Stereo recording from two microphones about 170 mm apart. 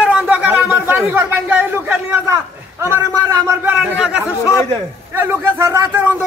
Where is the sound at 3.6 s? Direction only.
5° right (ahead or behind).